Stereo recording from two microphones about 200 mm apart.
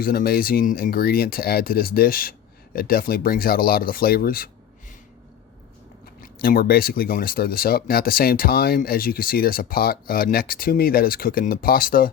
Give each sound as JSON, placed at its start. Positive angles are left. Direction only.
{"t": 0.0, "sound": "speech", "side_deg": 50}
{"t": 6.4, "sound": "speech", "side_deg": 50}